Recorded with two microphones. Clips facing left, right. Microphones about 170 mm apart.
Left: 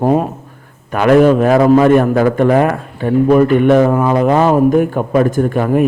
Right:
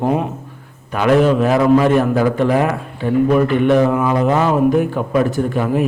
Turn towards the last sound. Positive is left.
turn(degrees=50)  # may be behind; listen again after turning